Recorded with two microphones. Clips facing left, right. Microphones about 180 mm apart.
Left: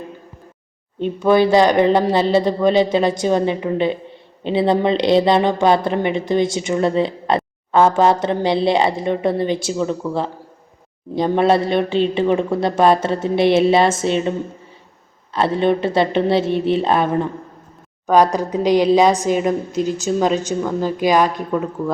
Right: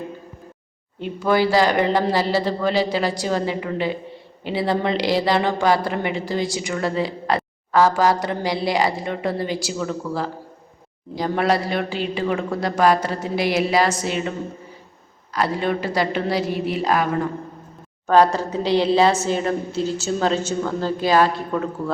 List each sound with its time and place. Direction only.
0.9 s a woman's voice: 20° left (ahead or behind)
18.0 s a woman's voice: 15° left (ahead or behind)